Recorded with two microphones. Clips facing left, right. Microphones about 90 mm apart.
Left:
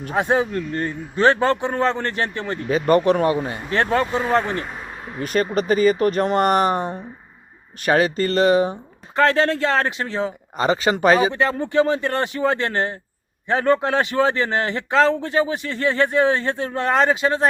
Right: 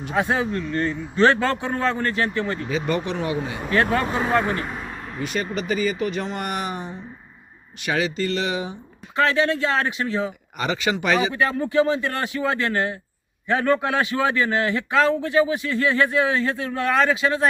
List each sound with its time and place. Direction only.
0.2 s a man's voice: 25° left (ahead or behind)
2.6 s speech: 50° left (ahead or behind); by 4.0 s 30° left (ahead or behind)
5.2 s speech: 45° left (ahead or behind); by 7.0 s 65° left (ahead or behind)
7.9 s a man's voice: 45° left (ahead or behind)
11.7 s speech: 50° left (ahead or behind)
12.4 s a man's voice: 35° left (ahead or behind)